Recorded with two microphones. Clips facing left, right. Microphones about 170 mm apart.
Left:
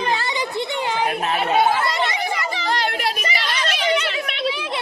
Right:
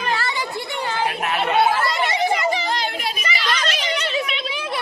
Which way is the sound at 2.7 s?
70° left (ahead or behind).